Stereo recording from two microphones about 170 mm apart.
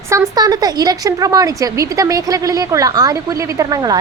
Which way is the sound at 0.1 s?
20° right (ahead or behind).